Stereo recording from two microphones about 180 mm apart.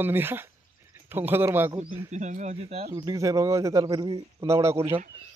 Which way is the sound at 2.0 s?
40° right (ahead or behind).